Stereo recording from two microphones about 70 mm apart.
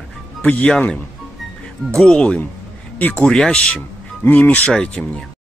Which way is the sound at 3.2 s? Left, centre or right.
Centre.